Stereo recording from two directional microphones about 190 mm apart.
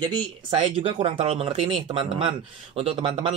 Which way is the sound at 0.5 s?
30° right (ahead or behind).